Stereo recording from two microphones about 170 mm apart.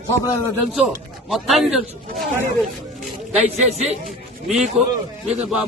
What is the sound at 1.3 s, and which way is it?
Speech, centre (ahead or behind).